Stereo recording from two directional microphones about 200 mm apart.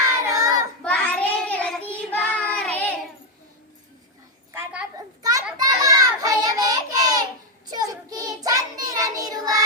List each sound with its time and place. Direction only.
0.3 s child singing: 15° right (ahead or behind)
0.8 s child singing: 5° left (ahead or behind)
4.5 s a sound: 5° right (ahead or behind)
4.9 s children playing: 15° right (ahead or behind)
5.5 s a sound: 20° right (ahead or behind)
7.7 s child singing: 20° right (ahead or behind)